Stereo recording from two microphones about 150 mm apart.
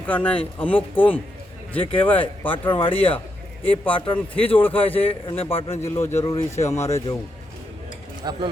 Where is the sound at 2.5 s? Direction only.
35° left (ahead or behind).